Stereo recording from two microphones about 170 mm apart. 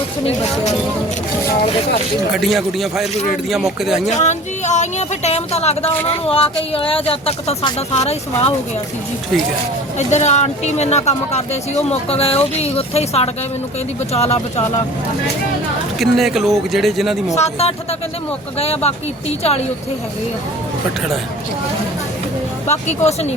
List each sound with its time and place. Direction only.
2.3 s speech: centre (ahead or behind)
4.2 s speech: 45° left (ahead or behind)
10.1 s speech: 40° left (ahead or behind)
16.0 s speech: centre (ahead or behind)
17.3 s speech: 40° left (ahead or behind)
22.6 s speech: 40° left (ahead or behind)